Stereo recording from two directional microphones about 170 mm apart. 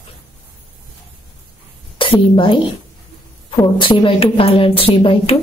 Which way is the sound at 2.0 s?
30° left (ahead or behind).